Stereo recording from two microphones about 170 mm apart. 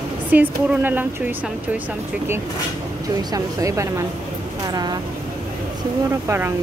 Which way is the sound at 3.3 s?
20° right (ahead or behind).